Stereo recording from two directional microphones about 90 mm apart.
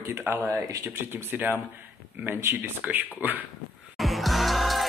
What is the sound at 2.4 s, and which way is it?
Speech, 20° right (ahead or behind).